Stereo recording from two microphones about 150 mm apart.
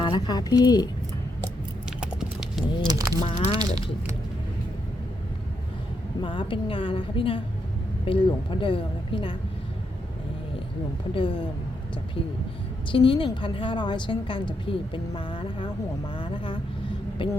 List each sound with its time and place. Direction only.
0.0 s speech: 30° left (ahead or behind)
2.0 s clip-clop: 5° right (ahead or behind)
2.8 s speech: 25° right (ahead or behind)
3.2 s a woman's voice: 35° left (ahead or behind)
3.5 s speech: 25° right (ahead or behind)
6.2 s a woman's voice: 35° left (ahead or behind)
11.1 s a woman's voice: 35° left (ahead or behind)
12.9 s a woman's voice: 35° left (ahead or behind)